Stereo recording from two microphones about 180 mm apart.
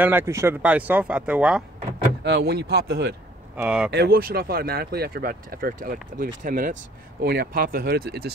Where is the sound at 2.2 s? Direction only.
65° right (ahead or behind).